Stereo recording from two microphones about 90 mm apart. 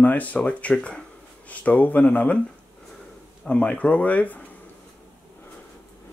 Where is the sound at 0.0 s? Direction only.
15° left (ahead or behind).